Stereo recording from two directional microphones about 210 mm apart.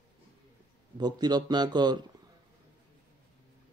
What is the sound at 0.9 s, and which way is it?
Speech, 20° right (ahead or behind).